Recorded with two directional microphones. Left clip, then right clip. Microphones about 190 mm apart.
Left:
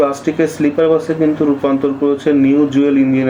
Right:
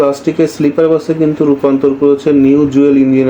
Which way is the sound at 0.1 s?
25° right (ahead or behind).